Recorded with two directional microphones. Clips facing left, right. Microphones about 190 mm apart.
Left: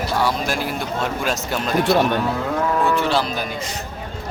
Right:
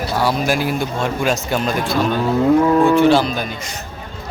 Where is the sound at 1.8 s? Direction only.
65° left (ahead or behind).